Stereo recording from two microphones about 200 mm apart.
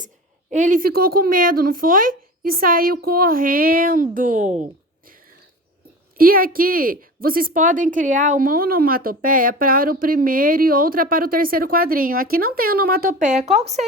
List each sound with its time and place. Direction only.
0.5 s a woman's voice: 40° right (ahead or behind)
6.1 s a woman's voice: 45° right (ahead or behind)